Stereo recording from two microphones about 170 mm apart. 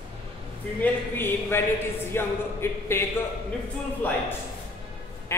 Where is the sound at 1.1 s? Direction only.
10° left (ahead or behind).